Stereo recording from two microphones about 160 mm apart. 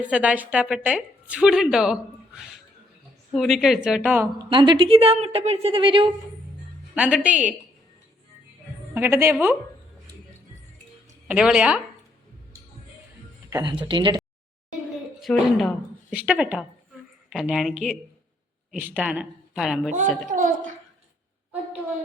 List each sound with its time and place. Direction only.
0.1 s a woman's voice: 10° right (ahead or behind)
3.3 s a woman's voice: centre (ahead or behind)
4.4 s a woman's voice: 30° right (ahead or behind)
6.9 s a woman's voice: 10° right (ahead or behind)
9.0 s a woman's voice: 15° right (ahead or behind)
11.3 s a woman's voice: 5° right (ahead or behind)
13.5 s speech: 25° right (ahead or behind)
15.2 s a woman's voice: centre (ahead or behind)
20.3 s a woman's voice: 55° right (ahead or behind)